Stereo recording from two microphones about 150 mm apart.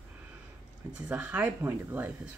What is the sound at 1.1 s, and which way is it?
Speech, 10° right (ahead or behind).